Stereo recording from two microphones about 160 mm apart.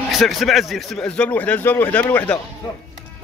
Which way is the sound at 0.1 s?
Centre (ahead or behind).